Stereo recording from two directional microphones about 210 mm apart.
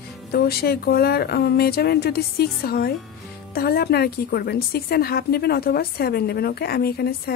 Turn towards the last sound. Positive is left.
turn(degrees=50)  # may be behind; listen again after turning